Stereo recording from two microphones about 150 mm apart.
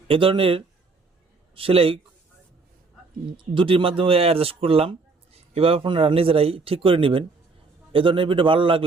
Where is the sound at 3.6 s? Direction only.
35° right (ahead or behind).